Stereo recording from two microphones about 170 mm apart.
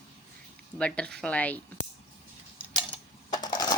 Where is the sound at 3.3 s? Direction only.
20° left (ahead or behind).